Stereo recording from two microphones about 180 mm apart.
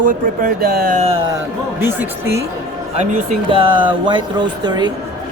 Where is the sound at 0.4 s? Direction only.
55° right (ahead or behind).